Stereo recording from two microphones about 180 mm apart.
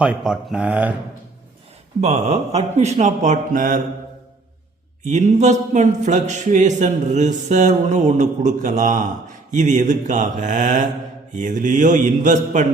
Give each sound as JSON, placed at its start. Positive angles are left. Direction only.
{"t": 0.0, "sound": "speech", "side_deg": -5}
{"t": 2.0, "sound": "speech", "side_deg": -40}
{"t": 5.0, "sound": "speech", "side_deg": -40}